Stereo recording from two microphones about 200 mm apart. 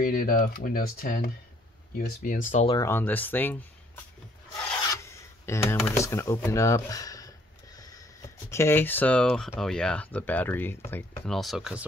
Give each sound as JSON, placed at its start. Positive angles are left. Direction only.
{"t": 0.0, "sound": "speech", "side_deg": 45}
{"t": 2.7, "sound": "speech", "side_deg": 15}
{"t": 5.4, "sound": "speech", "side_deg": 10}